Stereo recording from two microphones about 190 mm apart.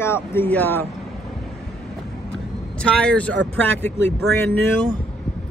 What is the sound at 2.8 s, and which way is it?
Speech, 5° left (ahead or behind).